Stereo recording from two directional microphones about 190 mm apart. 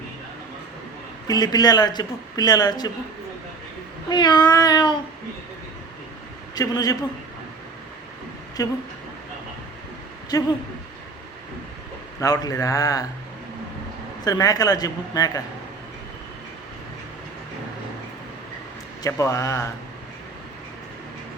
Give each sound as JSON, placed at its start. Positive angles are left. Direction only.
{"t": 1.3, "sound": "speech", "side_deg": 20}
{"t": 4.1, "sound": "speech", "side_deg": 20}
{"t": 6.6, "sound": "speech", "side_deg": 20}
{"t": 8.6, "sound": "a man's voice", "side_deg": 20}
{"t": 10.3, "sound": "speech", "side_deg": 20}
{"t": 12.2, "sound": "speech", "side_deg": 20}
{"t": 14.3, "sound": "speech", "side_deg": 20}
{"t": 19.0, "sound": "a man's voice", "side_deg": 15}